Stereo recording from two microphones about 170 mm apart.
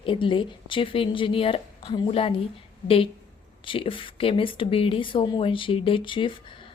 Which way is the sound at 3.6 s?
30° left (ahead or behind).